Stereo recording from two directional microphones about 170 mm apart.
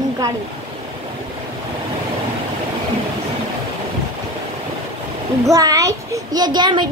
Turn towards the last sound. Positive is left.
turn(degrees=-25)  # may be behind; listen again after turning